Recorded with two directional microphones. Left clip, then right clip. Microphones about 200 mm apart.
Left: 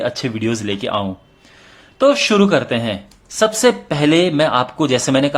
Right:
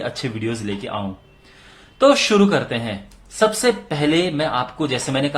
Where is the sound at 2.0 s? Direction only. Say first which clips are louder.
Left 1 dB; 20° left (ahead or behind).